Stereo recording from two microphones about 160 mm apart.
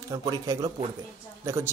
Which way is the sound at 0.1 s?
20° right (ahead or behind).